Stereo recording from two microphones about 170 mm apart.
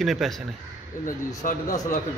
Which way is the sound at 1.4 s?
55° left (ahead or behind).